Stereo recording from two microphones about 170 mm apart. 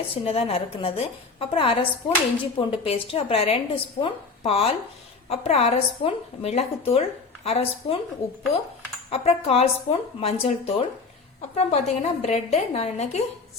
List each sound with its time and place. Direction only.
0.1 s a woman's voice: 35° left (ahead or behind)
9.0 s a woman's voice: 35° left (ahead or behind)